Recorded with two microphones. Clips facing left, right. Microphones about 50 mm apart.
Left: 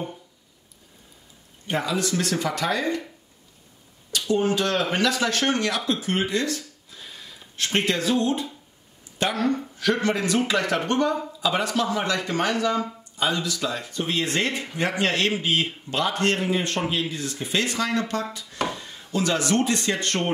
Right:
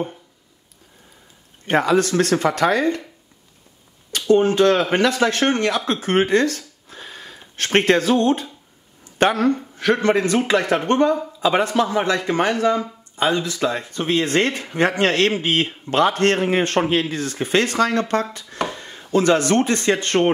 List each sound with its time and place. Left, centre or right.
1.7 s speech: right
4.3 s a man's voice: right
10.6 s speech: centre
11.4 s a man's voice: right